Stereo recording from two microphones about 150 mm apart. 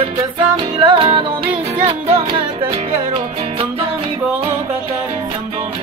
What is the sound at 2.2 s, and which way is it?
Music, 35° right (ahead or behind).